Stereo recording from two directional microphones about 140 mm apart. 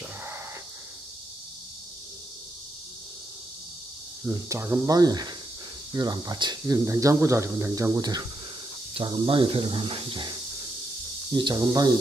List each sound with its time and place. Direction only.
4.3 s speech: 20° right (ahead or behind)
6.9 s speech: 20° right (ahead or behind); by 10.3 s 35° right (ahead or behind)
11.3 s speech: 35° right (ahead or behind)